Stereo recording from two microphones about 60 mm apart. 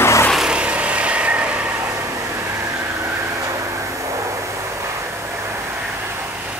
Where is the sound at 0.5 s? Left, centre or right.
Right.